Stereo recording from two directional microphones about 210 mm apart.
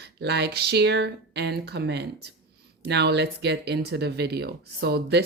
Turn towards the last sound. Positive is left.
turn(degrees=-50)  # may be behind; listen again after turning